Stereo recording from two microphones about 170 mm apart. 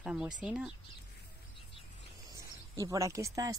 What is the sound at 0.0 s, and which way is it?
Speech, 5° right (ahead or behind).